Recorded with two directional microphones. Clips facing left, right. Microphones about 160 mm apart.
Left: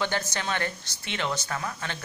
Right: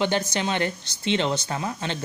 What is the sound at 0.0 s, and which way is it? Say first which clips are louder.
Speech: right 5 dB; 20° right (ahead or behind).